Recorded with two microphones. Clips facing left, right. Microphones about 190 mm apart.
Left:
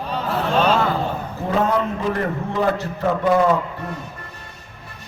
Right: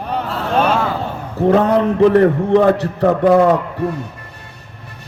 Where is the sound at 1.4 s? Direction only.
65° right (ahead or behind).